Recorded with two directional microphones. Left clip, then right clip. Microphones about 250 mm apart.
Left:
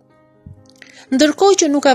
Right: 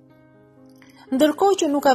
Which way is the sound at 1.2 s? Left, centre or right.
Left.